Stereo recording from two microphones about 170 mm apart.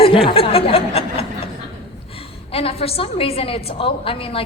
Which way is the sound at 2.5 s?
35° left (ahead or behind).